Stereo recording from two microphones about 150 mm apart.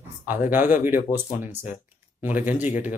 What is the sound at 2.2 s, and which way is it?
Speech, 10° right (ahead or behind).